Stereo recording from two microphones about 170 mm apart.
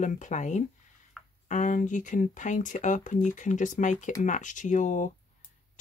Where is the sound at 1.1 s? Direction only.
Centre (ahead or behind).